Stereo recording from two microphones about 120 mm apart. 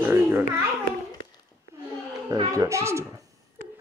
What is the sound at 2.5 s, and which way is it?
Speech, 25° right (ahead or behind).